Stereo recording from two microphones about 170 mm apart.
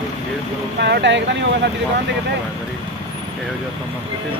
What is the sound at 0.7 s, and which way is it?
Speech, 80° right.